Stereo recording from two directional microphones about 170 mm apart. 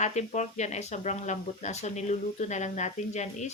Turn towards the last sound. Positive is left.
turn(degrees=45)  # may be behind; listen again after turning